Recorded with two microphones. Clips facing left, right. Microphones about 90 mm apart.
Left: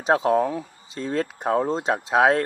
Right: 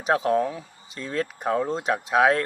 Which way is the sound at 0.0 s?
30° left (ahead or behind).